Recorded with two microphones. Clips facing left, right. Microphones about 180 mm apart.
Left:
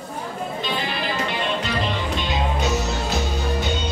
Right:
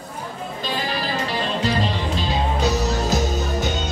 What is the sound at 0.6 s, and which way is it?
Music, 40° right (ahead or behind).